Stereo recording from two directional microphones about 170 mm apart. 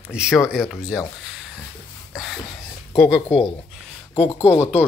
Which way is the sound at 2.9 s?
Centre (ahead or behind).